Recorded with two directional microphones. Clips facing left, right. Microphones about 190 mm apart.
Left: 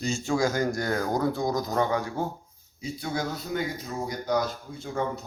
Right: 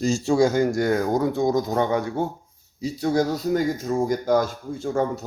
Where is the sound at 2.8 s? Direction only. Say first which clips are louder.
Right 9 dB; 40° right (ahead or behind).